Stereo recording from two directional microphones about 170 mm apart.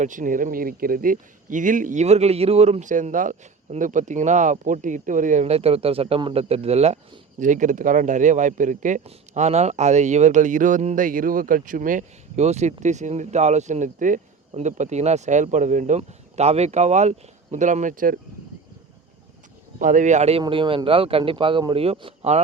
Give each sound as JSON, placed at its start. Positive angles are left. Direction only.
{"t": 0.0, "sound": "speech", "side_deg": -50}
{"t": 19.8, "sound": "speech", "side_deg": -50}
{"t": 20.4, "sound": "speech", "side_deg": -30}